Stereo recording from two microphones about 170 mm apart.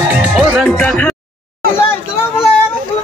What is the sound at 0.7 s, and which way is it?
Music, 10° left (ahead or behind).